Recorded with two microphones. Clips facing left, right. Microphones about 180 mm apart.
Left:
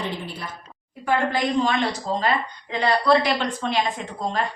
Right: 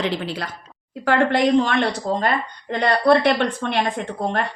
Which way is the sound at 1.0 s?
75° right (ahead or behind).